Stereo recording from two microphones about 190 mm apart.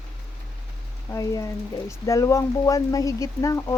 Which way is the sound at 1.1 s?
15° left (ahead or behind).